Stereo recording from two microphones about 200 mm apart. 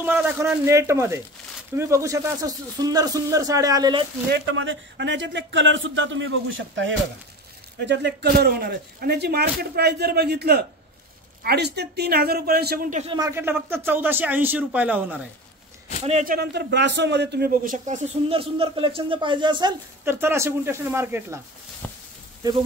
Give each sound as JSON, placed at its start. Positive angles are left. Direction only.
{"t": 0.0, "sound": "speech", "side_deg": -10}
{"t": 4.3, "sound": "speech", "side_deg": -70}
{"t": 7.8, "sound": "a man's voice", "side_deg": -60}
{"t": 12.9, "sound": "a man's voice", "side_deg": -30}
{"t": 13.2, "sound": "speech", "side_deg": -10}
{"t": 16.1, "sound": "a man's voice", "side_deg": -35}
{"t": 16.3, "sound": "a man's voice", "side_deg": -60}
{"t": 20.1, "sound": "speech", "side_deg": -10}
{"t": 21.8, "sound": "sizzle", "side_deg": 10}